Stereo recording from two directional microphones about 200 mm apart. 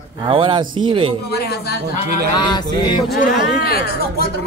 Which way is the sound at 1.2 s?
55° left (ahead or behind).